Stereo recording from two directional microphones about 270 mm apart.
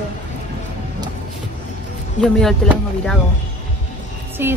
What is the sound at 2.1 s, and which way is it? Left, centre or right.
Speech, centre.